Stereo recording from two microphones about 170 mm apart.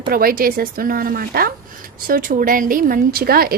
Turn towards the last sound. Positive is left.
turn(degrees=-60)  # may be behind; listen again after turning